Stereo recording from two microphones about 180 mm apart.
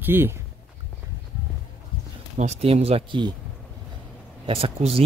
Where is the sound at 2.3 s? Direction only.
35° right (ahead or behind).